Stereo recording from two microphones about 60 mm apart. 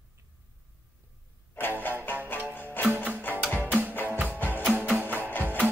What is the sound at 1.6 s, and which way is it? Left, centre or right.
Music, left.